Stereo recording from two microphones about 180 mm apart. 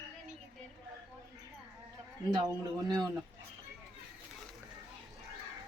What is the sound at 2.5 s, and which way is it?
Speech, 20° right (ahead or behind).